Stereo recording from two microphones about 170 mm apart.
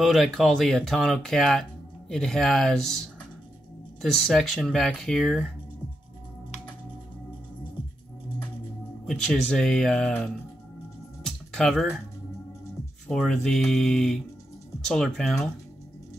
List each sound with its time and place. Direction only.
0.0 s speech: centre (ahead or behind)
9.0 s speech: centre (ahead or behind)
11.2 s music: centre (ahead or behind)
13.1 s speech: centre (ahead or behind)